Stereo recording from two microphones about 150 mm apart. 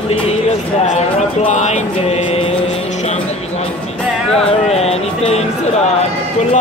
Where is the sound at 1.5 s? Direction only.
50° left (ahead or behind).